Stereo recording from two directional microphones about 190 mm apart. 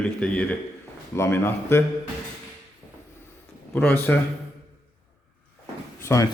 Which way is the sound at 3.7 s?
5° left (ahead or behind).